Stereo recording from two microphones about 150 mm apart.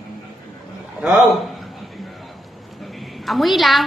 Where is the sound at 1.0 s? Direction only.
5° right (ahead or behind).